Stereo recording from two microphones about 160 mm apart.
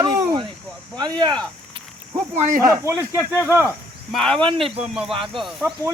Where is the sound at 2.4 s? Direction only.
60° right (ahead or behind).